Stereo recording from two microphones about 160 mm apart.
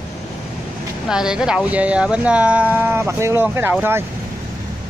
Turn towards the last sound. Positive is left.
turn(degrees=-15)  # may be behind; listen again after turning